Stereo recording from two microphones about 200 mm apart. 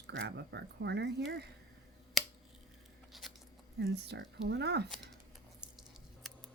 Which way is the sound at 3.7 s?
55° right (ahead or behind).